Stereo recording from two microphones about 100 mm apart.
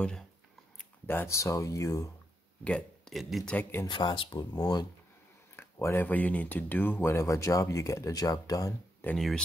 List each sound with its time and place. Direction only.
1.0 s speech: 25° left (ahead or behind)
2.6 s a sound: 10° left (ahead or behind)
3.2 s speech: centre (ahead or behind)
3.4 s speech: 15° left (ahead or behind)
3.8 s speech: 50° left (ahead or behind)
5.6 s a sound: 25° left (ahead or behind)
6.0 s speech: 15° left (ahead or behind); by 8.7 s 35° left (ahead or behind)
9.1 s speech: 5° left (ahead or behind)